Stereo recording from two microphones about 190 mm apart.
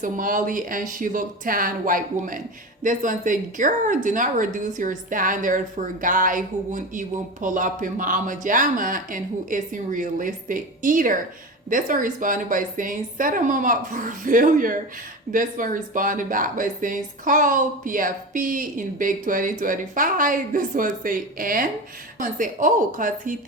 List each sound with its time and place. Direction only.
0.0 s speech: 45° right (ahead or behind)